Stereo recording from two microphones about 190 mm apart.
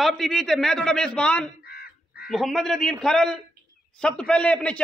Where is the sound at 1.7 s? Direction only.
55° left (ahead or behind).